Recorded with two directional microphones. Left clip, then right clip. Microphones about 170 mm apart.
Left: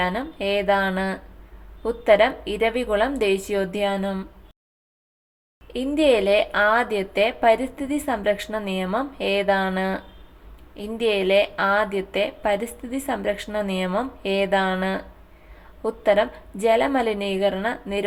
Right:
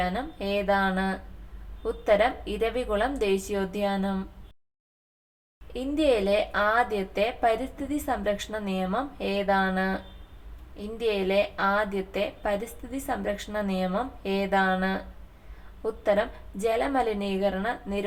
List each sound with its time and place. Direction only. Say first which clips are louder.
0.0 s a woman's voice: left 5 dB; 25° left (ahead or behind)
5.7 s a woman's voice: left 5 dB; 25° left (ahead or behind)